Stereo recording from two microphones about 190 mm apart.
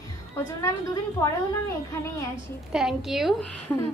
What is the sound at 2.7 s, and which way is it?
Speech, centre (ahead or behind).